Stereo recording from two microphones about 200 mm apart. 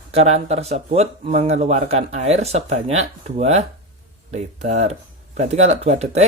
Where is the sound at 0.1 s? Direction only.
30° right (ahead or behind).